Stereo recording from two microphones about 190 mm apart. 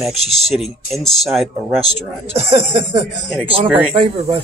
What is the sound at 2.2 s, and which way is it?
Speech, 30° right (ahead or behind).